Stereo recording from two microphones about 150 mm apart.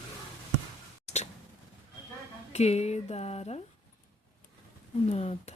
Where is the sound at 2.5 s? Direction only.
45° left (ahead or behind).